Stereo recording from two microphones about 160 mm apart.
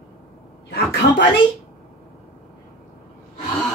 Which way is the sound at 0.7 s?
90° left.